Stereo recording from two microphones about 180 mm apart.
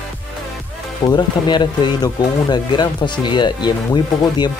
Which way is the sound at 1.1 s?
25° left (ahead or behind).